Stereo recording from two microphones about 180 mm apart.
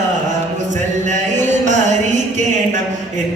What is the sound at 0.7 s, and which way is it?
Music, 45° right (ahead or behind).